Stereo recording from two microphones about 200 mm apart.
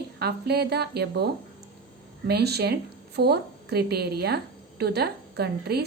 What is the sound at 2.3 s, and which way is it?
A woman's voice, 55° right (ahead or behind).